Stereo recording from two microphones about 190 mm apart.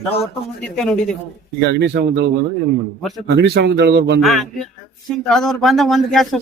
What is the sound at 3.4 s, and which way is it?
Speech, 65° right (ahead or behind).